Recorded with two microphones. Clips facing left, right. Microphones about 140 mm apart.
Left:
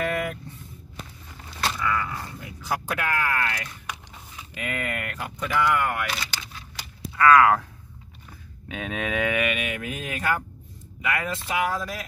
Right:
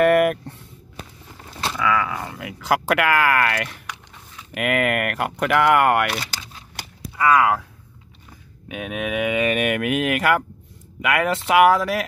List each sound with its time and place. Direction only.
0.0 s a sound: 65° right (ahead or behind)
1.8 s speech: 90° right
3.8 s a sound: 5° left (ahead or behind)
4.6 s speech: 75° right (ahead or behind)
7.2 s speech: 15° right (ahead or behind)
8.6 s speech: 15° right (ahead or behind)
9.6 s speech: 70° right (ahead or behind); by 12.0 s 85° right